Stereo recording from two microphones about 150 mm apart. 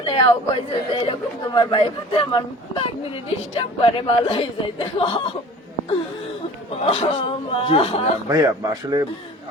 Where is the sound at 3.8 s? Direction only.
35° left (ahead or behind).